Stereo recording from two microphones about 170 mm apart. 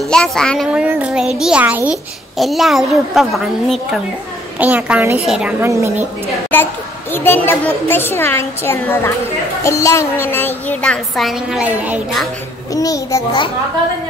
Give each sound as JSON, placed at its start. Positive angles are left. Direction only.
{"t": 0.1, "sound": "a child's voice", "side_deg": 5}
{"t": 6.5, "sound": "a woman's voice", "side_deg": 10}
{"t": 12.7, "sound": "a child's voice", "side_deg": 20}